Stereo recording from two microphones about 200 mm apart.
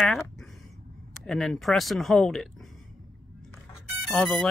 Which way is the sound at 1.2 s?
Centre (ahead or behind).